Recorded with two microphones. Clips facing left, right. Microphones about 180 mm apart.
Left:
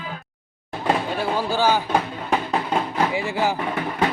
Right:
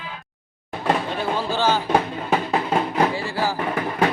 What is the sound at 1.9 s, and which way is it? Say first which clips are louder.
Music: right 2 dB; 5° right (ahead or behind).